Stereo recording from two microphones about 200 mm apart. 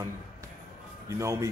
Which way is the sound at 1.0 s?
15° right (ahead or behind).